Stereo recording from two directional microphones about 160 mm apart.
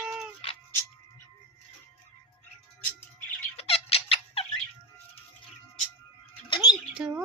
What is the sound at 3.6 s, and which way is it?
Squeak, 40° left (ahead or behind).